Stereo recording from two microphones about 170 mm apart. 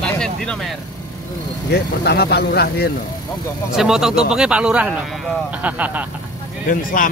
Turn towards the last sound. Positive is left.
turn(degrees=55)  # may be behind; listen again after turning